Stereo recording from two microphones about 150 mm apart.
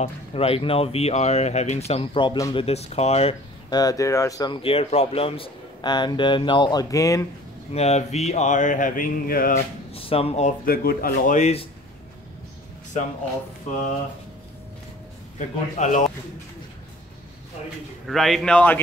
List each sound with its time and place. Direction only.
0.0 s speech: 40° left (ahead or behind)
3.7 s speech: 25° left (ahead or behind)
7.7 s mantra: 45° left (ahead or behind); by 9.6 s 70° left (ahead or behind)
9.9 s speech: 40° left (ahead or behind)
10.6 s speech: 80° left; by 11.6 s 50° left (ahead or behind)
15.3 s mantra: 55° left (ahead or behind)
18.0 s a man's voice: centre (ahead or behind)